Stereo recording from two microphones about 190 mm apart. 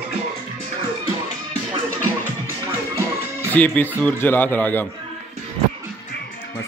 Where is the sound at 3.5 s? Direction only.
10° left (ahead or behind).